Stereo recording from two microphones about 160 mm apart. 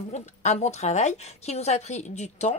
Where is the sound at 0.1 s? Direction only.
45° left (ahead or behind).